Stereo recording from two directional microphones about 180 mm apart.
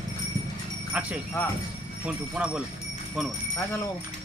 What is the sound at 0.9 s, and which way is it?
Speech, 10° right (ahead or behind).